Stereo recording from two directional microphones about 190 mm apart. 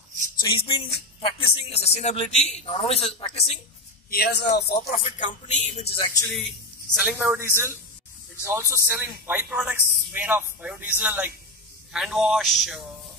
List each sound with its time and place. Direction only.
0.4 s a man's voice: 25° left (ahead or behind)
4.1 s a man's voice: 55° left (ahead or behind)
4.7 s a man's voice: 40° left (ahead or behind)
6.3 s a man's voice: centre (ahead or behind)